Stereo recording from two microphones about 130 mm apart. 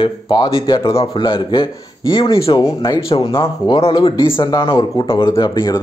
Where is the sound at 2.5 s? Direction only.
30° left (ahead or behind).